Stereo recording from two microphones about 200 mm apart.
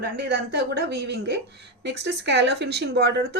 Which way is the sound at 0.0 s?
55° right (ahead or behind).